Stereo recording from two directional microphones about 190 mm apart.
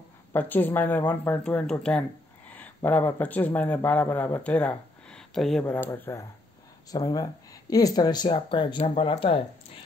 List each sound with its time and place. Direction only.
0.3 s speech: 10° left (ahead or behind); by 9.4 s 30° left (ahead or behind)